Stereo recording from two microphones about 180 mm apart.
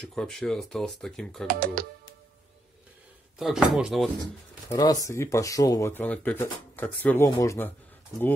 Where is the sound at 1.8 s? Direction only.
55° right (ahead or behind).